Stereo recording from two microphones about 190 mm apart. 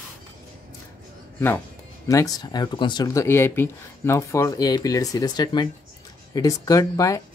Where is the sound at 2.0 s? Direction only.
15° left (ahead or behind).